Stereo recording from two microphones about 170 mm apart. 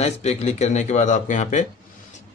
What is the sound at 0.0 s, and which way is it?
Speech, 40° left (ahead or behind).